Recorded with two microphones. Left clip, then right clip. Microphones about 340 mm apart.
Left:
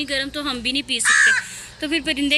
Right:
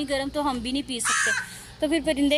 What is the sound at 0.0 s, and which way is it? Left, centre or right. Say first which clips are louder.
A woman's voice: left 2 dB; centre.